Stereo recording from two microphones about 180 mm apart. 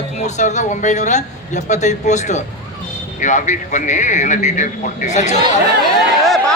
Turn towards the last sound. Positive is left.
turn(degrees=0)  # may be behind; listen again after turning